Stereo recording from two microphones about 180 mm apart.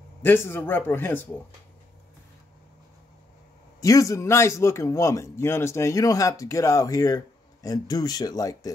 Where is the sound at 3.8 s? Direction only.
20° left (ahead or behind).